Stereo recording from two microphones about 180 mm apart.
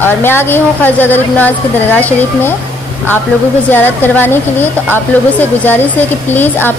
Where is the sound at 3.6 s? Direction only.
10° left (ahead or behind).